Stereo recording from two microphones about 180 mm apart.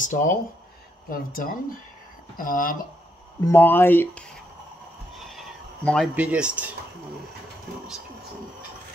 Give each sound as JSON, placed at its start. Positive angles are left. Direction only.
{"t": 0.0, "sound": "speech", "side_deg": 45}
{"t": 3.3, "sound": "speech", "side_deg": 15}
{"t": 5.3, "sound": "a sound", "side_deg": 0}
{"t": 6.1, "sound": "speech", "side_deg": -5}